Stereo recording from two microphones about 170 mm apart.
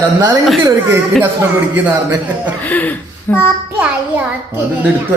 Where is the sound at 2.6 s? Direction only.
10° left (ahead or behind).